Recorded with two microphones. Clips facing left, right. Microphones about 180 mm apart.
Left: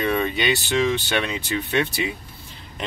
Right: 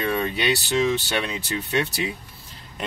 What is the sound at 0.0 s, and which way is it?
Speech, centre (ahead or behind).